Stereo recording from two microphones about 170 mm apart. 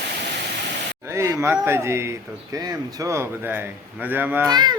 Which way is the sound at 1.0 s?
15° right (ahead or behind).